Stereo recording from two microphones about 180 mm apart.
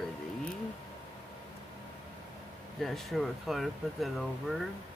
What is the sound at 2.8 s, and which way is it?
Speech, centre (ahead or behind).